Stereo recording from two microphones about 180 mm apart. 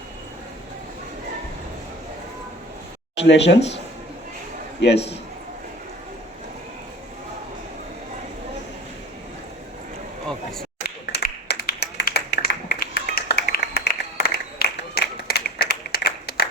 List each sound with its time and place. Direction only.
3.2 s speech: 75° left (ahead or behind)
10.8 s clapping: 60° left (ahead or behind)